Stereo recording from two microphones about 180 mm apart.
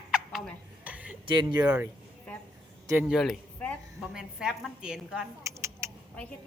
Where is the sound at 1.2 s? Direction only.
25° right (ahead or behind).